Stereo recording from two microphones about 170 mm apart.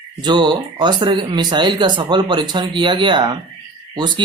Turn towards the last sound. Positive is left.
turn(degrees=-25)  # may be behind; listen again after turning